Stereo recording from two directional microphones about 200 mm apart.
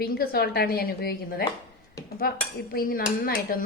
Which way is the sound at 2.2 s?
50° left (ahead or behind).